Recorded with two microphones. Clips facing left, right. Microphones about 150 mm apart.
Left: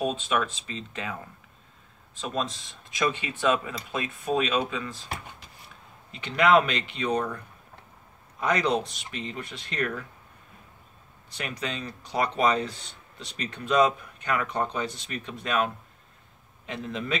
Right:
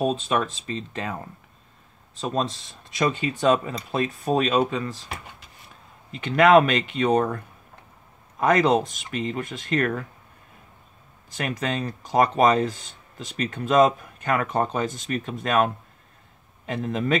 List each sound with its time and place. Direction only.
0.0 s speech: 40° right (ahead or behind)
2.1 s speech: 40° right (ahead or behind)
6.2 s speech: 50° right (ahead or behind)
11.6 s speech: 50° right (ahead or behind)